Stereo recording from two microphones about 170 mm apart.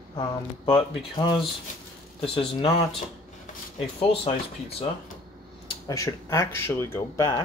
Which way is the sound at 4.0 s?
35° left (ahead or behind).